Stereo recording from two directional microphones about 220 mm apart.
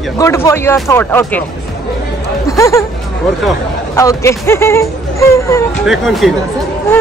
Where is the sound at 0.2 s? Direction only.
15° left (ahead or behind).